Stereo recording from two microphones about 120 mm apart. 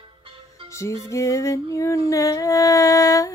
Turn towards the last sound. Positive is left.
turn(degrees=25)  # may be behind; listen again after turning